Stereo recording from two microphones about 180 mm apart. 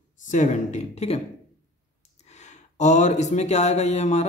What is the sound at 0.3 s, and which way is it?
Speech, 40° left (ahead or behind).